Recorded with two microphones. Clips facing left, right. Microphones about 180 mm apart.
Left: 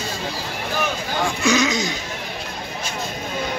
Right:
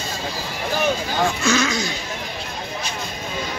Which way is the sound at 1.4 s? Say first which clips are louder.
Left 1 dB; 15° left (ahead or behind).